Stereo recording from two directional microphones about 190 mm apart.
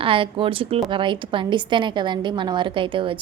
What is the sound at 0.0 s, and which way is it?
A woman's voice, 30° right (ahead or behind).